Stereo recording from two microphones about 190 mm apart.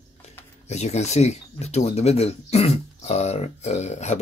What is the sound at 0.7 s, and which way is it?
Speech, 35° left (ahead or behind).